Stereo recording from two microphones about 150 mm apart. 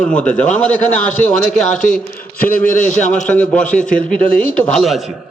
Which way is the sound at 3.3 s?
10° left (ahead or behind).